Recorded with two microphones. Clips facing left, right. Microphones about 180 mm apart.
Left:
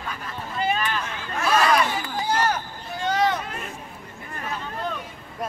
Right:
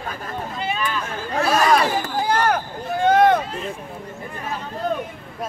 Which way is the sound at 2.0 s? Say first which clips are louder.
Right 4 dB; 60° right (ahead or behind).